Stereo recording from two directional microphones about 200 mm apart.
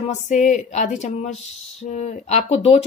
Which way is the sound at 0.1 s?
35° left (ahead or behind).